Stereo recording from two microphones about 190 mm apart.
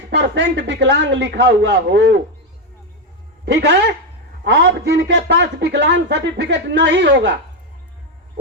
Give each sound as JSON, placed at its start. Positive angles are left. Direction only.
{"t": 0.1, "sound": "speech", "side_deg": -65}
{"t": 3.4, "sound": "speech", "side_deg": -65}